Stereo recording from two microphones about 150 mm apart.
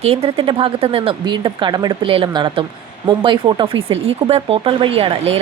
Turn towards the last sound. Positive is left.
turn(degrees=-40)  # may be behind; listen again after turning